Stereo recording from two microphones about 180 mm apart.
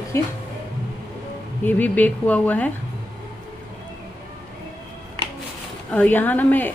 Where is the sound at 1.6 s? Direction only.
10° left (ahead or behind).